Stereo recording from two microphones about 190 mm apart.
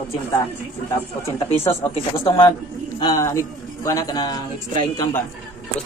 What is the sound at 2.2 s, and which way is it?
A man's voice, 20° left (ahead or behind).